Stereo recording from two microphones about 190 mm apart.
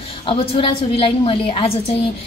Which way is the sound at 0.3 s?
30° left (ahead or behind).